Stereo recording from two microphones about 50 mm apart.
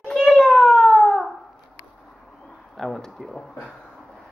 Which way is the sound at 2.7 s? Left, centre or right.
Centre.